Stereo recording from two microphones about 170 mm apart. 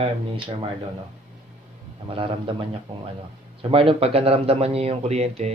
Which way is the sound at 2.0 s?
30° right (ahead or behind).